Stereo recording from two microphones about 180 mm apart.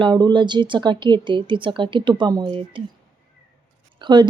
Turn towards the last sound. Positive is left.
turn(degrees=-25)  # may be behind; listen again after turning